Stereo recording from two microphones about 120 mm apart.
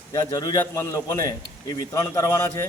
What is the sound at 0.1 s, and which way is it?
A man's voice, 30° left (ahead or behind).